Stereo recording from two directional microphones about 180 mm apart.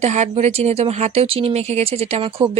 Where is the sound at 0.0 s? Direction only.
40° right (ahead or behind).